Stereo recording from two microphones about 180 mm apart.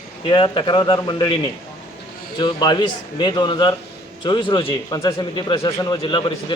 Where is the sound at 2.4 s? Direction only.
25° left (ahead or behind).